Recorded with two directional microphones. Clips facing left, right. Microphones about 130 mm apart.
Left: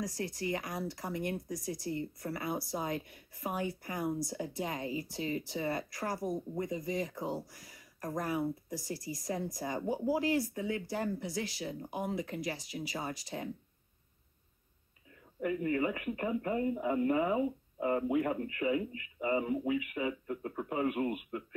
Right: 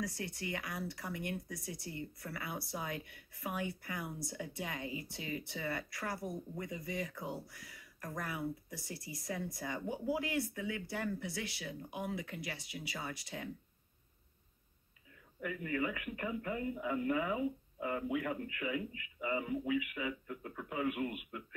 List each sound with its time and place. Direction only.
0.0 s speech: 40° left (ahead or behind)
15.4 s speech: 30° left (ahead or behind)